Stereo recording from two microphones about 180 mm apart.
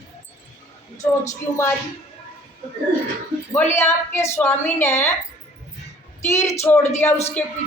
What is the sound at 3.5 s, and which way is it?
Speech, 15° left (ahead or behind).